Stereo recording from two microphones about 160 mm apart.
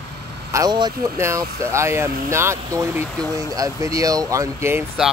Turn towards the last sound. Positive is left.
turn(degrees=0)  # may be behind; listen again after turning